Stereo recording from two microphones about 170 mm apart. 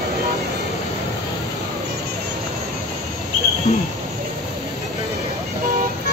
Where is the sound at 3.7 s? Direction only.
45° left (ahead or behind).